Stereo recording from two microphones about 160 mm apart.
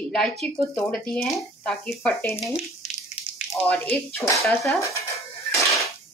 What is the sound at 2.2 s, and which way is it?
Speech, 15° left (ahead or behind).